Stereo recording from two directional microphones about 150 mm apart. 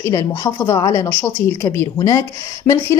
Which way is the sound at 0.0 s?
20° left (ahead or behind).